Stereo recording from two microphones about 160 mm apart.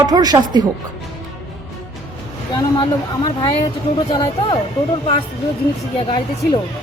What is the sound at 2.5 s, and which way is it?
Speech, 25° left (ahead or behind).